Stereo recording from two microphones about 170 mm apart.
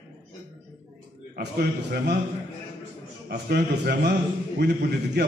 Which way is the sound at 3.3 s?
70° right (ahead or behind).